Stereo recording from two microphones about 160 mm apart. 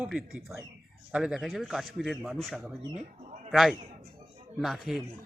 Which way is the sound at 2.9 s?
50° right (ahead or behind).